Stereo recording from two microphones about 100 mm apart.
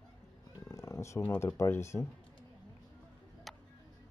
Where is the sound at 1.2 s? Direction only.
20° left (ahead or behind).